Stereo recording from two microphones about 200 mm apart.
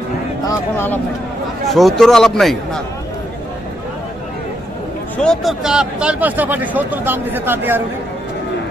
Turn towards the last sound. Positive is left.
turn(degrees=-10)  # may be behind; listen again after turning